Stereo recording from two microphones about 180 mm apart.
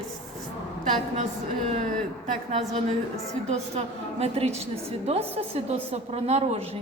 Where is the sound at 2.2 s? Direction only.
40° right (ahead or behind).